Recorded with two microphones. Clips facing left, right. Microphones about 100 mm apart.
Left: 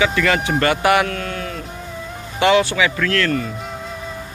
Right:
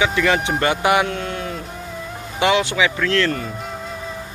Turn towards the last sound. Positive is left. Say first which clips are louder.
# even
turn(degrees=-20)  # may be behind; listen again after turning